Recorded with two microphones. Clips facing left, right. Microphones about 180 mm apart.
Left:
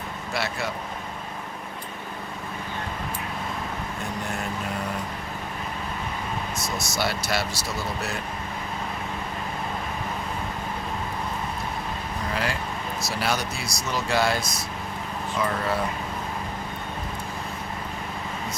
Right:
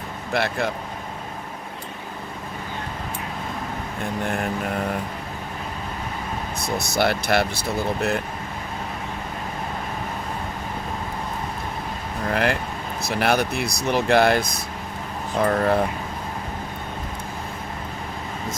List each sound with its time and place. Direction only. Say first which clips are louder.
0.3 s speech: right 6 dB; 55° right (ahead or behind)
6.6 s speech: right 7 dB; 60° right (ahead or behind)
12.3 s speech: right 7 dB; 60° right (ahead or behind)